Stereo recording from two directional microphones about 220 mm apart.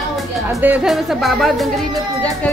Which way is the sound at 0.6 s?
5° right (ahead or behind).